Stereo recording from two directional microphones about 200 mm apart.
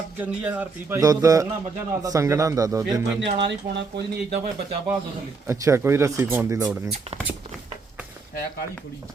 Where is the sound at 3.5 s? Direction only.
55° right (ahead or behind).